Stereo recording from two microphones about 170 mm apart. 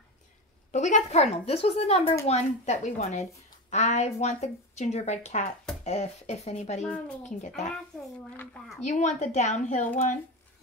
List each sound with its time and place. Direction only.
0.7 s speech: 45° left (ahead or behind)
7.7 s a child's voice: 5° left (ahead or behind)
8.8 s speech: 45° left (ahead or behind)